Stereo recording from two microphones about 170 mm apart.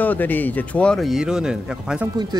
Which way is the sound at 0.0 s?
10° left (ahead or behind).